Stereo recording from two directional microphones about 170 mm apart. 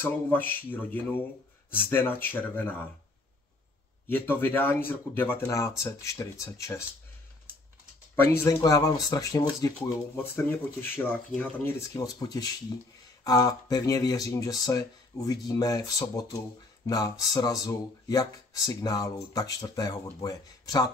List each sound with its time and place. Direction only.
0.0 s speech: 10° left (ahead or behind)
4.1 s speech: 10° left (ahead or behind)
8.5 s speech: 20° left (ahead or behind)